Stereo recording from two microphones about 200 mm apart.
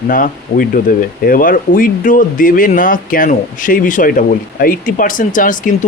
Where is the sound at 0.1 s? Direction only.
45° left (ahead or behind).